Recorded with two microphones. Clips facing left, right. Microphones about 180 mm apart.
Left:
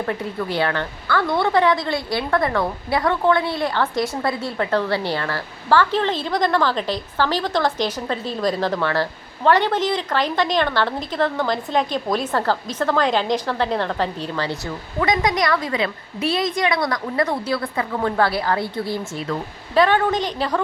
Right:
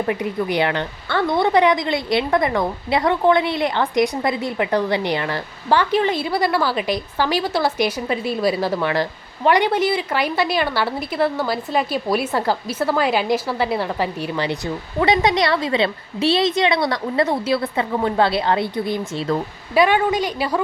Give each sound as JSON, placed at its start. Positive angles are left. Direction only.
{"t": 0.1, "sound": "a woman's voice", "side_deg": -15}
{"t": 15.0, "sound": "a woman's voice", "side_deg": -25}